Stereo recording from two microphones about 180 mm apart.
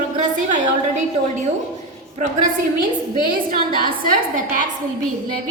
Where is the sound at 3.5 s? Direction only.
25° left (ahead or behind).